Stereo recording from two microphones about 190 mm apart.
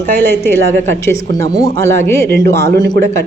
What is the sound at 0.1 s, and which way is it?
Speech, 10° left (ahead or behind).